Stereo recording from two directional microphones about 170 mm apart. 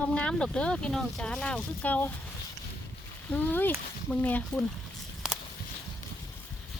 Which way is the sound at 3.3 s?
10° left (ahead or behind).